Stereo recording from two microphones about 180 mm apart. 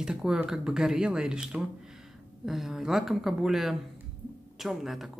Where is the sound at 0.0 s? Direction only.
5° right (ahead or behind).